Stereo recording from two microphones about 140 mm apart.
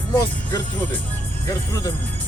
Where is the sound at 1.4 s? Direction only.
25° left (ahead or behind).